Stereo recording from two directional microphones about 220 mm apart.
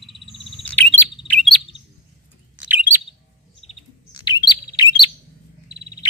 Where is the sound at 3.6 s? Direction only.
20° left (ahead or behind).